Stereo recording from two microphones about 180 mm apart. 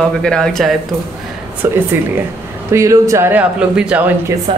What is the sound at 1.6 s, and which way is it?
Speech, 10° right (ahead or behind).